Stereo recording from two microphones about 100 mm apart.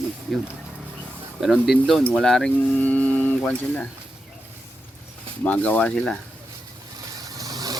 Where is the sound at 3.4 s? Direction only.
15° left (ahead or behind).